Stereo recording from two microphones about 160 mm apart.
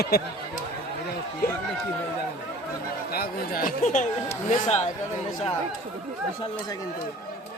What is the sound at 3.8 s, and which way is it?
Speech, 50° left (ahead or behind).